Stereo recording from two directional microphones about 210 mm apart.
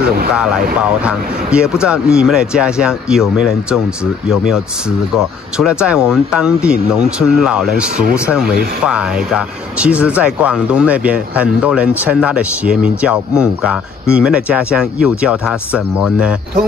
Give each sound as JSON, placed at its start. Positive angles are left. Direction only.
{"t": 0.0, "sound": "vehicle", "side_deg": -45}
{"t": 0.7, "sound": "speech", "side_deg": -5}